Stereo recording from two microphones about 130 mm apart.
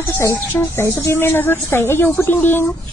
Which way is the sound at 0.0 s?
20° left (ahead or behind).